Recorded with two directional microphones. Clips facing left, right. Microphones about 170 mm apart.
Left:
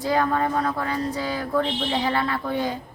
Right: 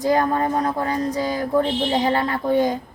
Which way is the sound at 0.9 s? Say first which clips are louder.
Right 4 dB; 40° right (ahead or behind).